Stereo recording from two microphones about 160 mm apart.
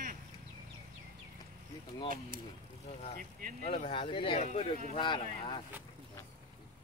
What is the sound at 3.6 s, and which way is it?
Speech, 40° left (ahead or behind).